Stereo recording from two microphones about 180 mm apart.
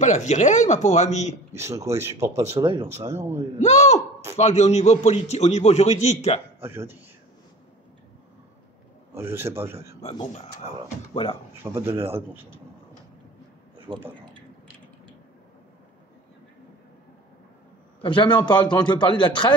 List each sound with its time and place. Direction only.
0.0 s a man's voice: 40° left (ahead or behind)
1.5 s speech: 15° right (ahead or behind)
3.5 s a man's voice: 40° left (ahead or behind)
6.6 s speech: 10° right (ahead or behind)
9.1 s speech: 15° right (ahead or behind)
9.9 s a man's voice: 35° left (ahead or behind)
11.6 s speech: 15° right (ahead or behind)
13.7 s a sound: 30° right (ahead or behind)
18.0 s a man's voice: 25° left (ahead or behind)